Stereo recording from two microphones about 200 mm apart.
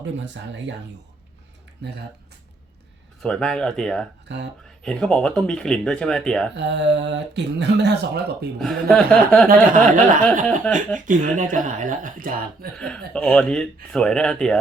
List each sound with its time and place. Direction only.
0.0 s speech: 65° right (ahead or behind)
1.8 s speech: 55° right (ahead or behind)
3.2 s speech: 5° left (ahead or behind)
4.3 s speech: 60° right (ahead or behind)
4.8 s speech: 5° left (ahead or behind)
6.6 s speech: 65° right (ahead or behind)
8.6 s speech: 5° left (ahead or behind)
9.5 s speech: 40° right (ahead or behind)
10.7 s speech: 5° left (ahead or behind)
11.0 s speech: 40° right (ahead or behind)
12.7 s speech: 5° left (ahead or behind)